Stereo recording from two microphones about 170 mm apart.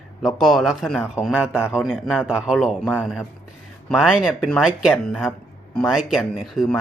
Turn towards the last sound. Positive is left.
turn(degrees=0)  # may be behind; listen again after turning